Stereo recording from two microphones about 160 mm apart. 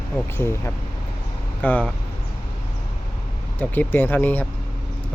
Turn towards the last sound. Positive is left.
turn(degrees=10)  # may be behind; listen again after turning